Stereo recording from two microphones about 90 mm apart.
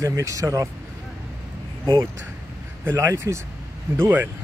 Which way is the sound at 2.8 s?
30° right (ahead or behind).